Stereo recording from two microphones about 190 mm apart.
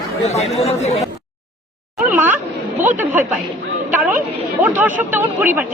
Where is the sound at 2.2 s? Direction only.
10° right (ahead or behind).